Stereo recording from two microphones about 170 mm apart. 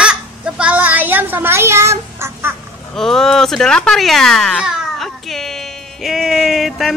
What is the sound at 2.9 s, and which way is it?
Speech, centre (ahead or behind).